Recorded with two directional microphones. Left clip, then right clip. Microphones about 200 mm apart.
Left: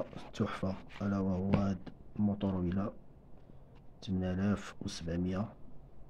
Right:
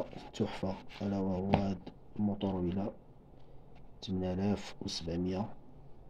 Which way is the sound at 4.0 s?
35° left (ahead or behind).